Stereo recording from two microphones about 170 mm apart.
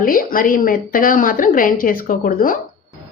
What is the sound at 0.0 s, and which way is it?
A woman's voice, 55° left (ahead or behind).